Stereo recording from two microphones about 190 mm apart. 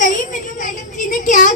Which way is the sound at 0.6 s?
45° left (ahead or behind).